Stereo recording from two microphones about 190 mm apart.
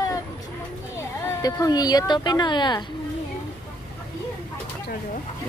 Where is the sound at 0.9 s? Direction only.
20° left (ahead or behind).